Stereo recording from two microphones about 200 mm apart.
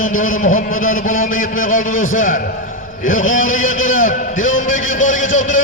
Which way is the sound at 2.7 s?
40° left (ahead or behind).